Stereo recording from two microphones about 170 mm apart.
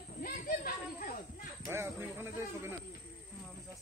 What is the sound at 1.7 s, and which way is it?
Speech, 15° right (ahead or behind).